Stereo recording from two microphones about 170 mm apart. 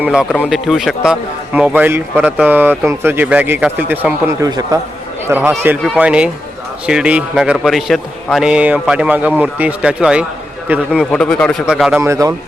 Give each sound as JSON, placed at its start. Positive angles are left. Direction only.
{"t": 0.0, "sound": "a man's voice", "side_deg": -5}
{"t": 5.3, "sound": "a man's voice", "side_deg": -10}
{"t": 11.1, "sound": "a man's voice", "side_deg": 5}
{"t": 12.0, "sound": "a man's voice", "side_deg": -20}